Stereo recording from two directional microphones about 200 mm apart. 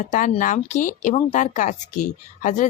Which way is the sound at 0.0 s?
40° left (ahead or behind).